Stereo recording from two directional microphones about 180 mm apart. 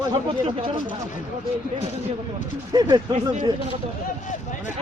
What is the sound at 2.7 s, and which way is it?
Speech, 20° right (ahead or behind).